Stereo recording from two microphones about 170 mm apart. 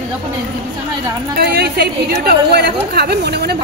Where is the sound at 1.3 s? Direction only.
70° right (ahead or behind).